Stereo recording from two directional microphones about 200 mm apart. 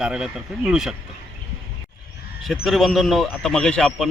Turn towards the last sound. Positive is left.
turn(degrees=5)  # may be behind; listen again after turning